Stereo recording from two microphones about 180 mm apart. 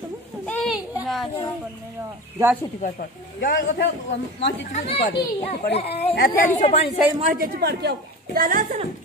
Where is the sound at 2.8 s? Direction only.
55° left (ahead or behind).